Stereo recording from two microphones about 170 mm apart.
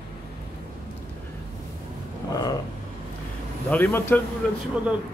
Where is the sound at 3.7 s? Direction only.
10° left (ahead or behind).